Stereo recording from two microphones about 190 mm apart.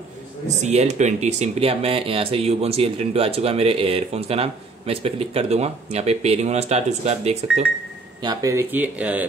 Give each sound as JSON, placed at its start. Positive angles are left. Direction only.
{"t": 0.6, "sound": "speech", "side_deg": -35}
{"t": 8.2, "sound": "speech", "side_deg": -20}